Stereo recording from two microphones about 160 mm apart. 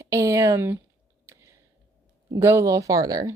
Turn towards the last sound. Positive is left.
turn(degrees=-20)  # may be behind; listen again after turning